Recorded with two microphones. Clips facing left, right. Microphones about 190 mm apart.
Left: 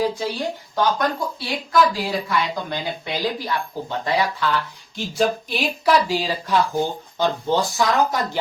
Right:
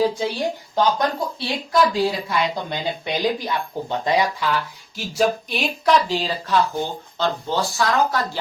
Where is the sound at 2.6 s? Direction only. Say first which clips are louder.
Right 1 dB; 20° right (ahead or behind).